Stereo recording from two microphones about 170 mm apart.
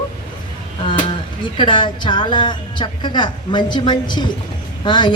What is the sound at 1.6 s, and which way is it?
A woman's voice, 30° left (ahead or behind).